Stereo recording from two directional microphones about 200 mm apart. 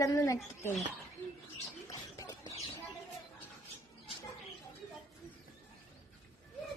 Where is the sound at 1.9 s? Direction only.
15° left (ahead or behind).